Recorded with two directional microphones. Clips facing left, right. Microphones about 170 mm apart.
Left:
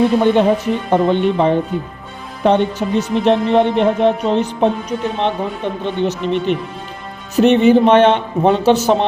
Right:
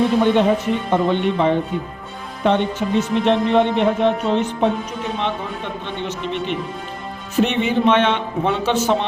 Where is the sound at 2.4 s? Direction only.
40° left (ahead or behind).